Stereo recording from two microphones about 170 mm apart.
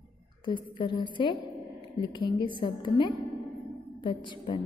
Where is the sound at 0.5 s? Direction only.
30° left (ahead or behind).